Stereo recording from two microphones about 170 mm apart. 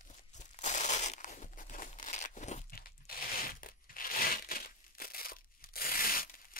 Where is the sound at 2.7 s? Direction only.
60° left (ahead or behind).